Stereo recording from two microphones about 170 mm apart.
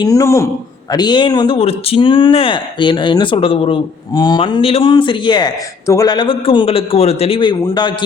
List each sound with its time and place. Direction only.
0.0 s a man's voice: 20° left (ahead or behind)